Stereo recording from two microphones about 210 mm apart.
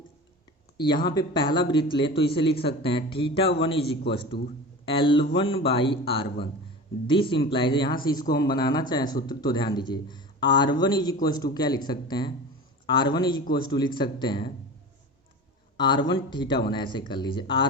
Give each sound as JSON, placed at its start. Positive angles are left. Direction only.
{"t": 0.8, "sound": "speech", "side_deg": 20}
{"t": 3.8, "sound": "a man's voice", "side_deg": 50}
{"t": 4.9, "sound": "speech", "side_deg": 25}
{"t": 15.8, "sound": "speech", "side_deg": 20}